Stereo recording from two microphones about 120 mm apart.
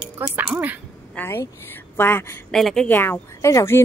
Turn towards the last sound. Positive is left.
turn(degrees=25)  # may be behind; listen again after turning